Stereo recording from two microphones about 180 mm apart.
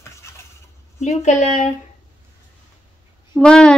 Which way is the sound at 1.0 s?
40° left (ahead or behind).